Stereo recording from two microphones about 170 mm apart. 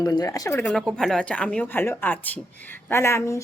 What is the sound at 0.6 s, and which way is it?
Speech, centre (ahead or behind).